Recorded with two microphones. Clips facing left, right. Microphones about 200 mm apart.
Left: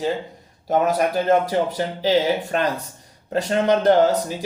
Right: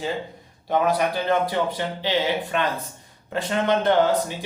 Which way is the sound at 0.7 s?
45° left (ahead or behind).